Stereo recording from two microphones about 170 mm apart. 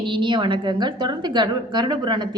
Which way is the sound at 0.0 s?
30° right (ahead or behind).